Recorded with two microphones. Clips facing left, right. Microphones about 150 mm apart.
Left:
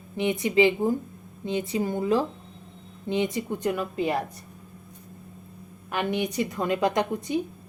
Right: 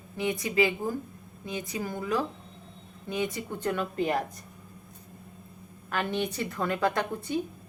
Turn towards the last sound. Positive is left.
turn(degrees=20)  # may be behind; listen again after turning